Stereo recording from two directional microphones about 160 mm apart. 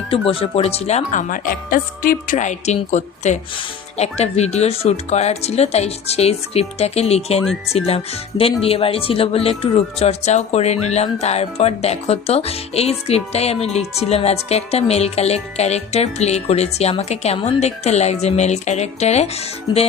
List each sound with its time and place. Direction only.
0.1 s speech: 35° left (ahead or behind)